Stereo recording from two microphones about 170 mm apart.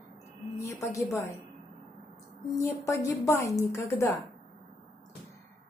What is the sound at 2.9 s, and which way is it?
A woman's voice, 20° left (ahead or behind).